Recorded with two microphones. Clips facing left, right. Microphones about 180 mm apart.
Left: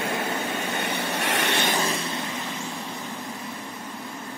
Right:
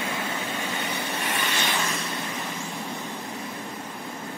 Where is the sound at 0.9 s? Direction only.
80° left.